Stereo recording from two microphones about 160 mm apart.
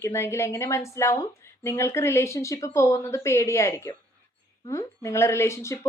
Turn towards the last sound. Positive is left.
turn(degrees=15)  # may be behind; listen again after turning